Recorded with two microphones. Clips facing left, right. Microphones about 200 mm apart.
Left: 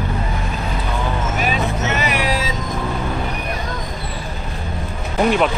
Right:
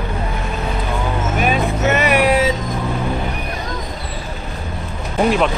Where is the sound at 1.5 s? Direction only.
60° right (ahead or behind).